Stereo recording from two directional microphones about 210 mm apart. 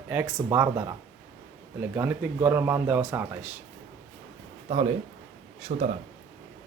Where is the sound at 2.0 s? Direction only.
10° right (ahead or behind).